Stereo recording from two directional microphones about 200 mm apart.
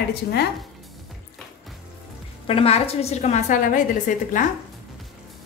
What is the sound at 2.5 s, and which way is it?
A woman's voice, 30° left (ahead or behind).